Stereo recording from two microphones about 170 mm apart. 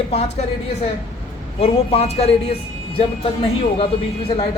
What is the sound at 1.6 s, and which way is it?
Speech, 35° left (ahead or behind).